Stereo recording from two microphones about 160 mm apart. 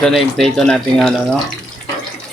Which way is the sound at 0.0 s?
Centre (ahead or behind).